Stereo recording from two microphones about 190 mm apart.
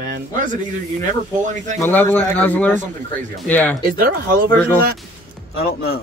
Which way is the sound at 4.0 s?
50° right (ahead or behind).